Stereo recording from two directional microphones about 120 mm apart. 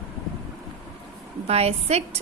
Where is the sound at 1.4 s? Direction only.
60° right (ahead or behind).